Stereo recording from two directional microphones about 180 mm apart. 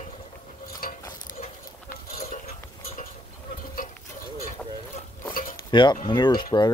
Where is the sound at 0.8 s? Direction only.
55° left (ahead or behind).